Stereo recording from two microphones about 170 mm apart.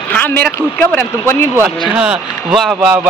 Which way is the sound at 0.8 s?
15° left (ahead or behind).